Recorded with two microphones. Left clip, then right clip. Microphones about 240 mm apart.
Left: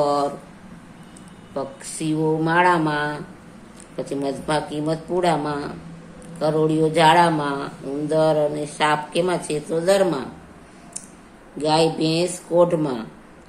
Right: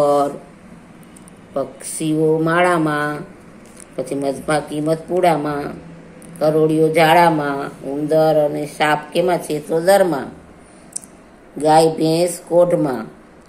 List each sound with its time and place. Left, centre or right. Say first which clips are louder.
1.5 s speech: right 5 dB; centre
11.6 s speech: right 6 dB; centre